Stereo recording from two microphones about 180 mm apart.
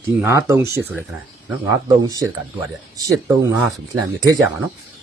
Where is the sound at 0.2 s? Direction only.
15° right (ahead or behind).